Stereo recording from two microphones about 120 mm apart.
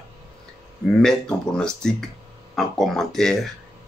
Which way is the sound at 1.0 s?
5° left (ahead or behind).